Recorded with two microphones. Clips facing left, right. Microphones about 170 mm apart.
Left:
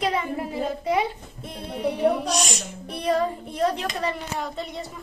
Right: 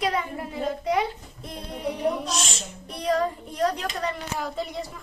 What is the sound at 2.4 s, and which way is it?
Speech, 15° left (ahead or behind).